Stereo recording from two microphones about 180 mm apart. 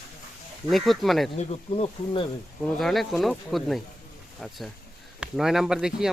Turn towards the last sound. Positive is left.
turn(degrees=-5)  # may be behind; listen again after turning